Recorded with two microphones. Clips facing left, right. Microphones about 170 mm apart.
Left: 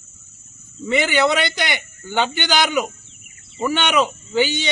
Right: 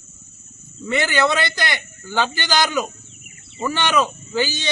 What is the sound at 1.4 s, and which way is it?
A man's voice, 20° left (ahead or behind).